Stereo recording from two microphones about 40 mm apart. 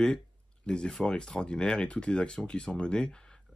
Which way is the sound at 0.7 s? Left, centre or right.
Left.